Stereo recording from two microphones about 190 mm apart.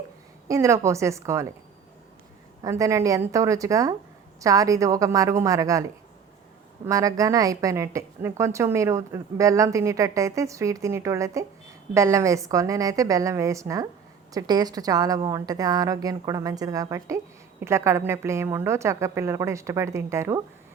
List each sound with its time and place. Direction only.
0.4 s a woman's voice: 15° right (ahead or behind)
2.6 s a woman's voice: 15° right (ahead or behind)